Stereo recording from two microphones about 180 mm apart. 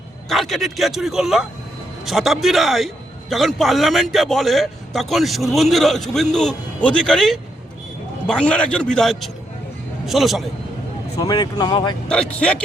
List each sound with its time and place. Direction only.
0.3 s a man's voice: centre (ahead or behind)
11.2 s speech: 20° left (ahead or behind)
12.0 s a man's voice: 5° left (ahead or behind)